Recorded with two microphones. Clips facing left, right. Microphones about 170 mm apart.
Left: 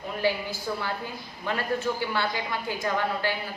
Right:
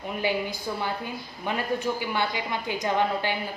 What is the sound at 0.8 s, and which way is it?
A woman's voice, 20° right (ahead or behind).